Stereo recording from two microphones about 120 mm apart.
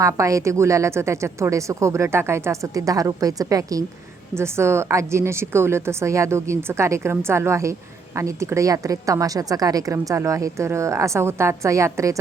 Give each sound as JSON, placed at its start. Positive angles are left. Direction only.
{"t": 0.0, "sound": "a woman's voice", "side_deg": -25}